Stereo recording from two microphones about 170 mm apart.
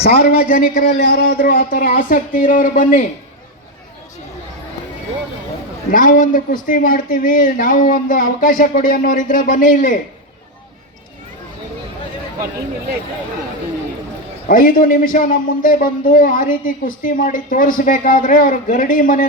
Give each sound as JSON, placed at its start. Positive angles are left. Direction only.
{"t": 0.0, "sound": "speech", "side_deg": 65}
{"t": 5.9, "sound": "a man's voice", "side_deg": 50}
{"t": 14.4, "sound": "a man's voice", "side_deg": 55}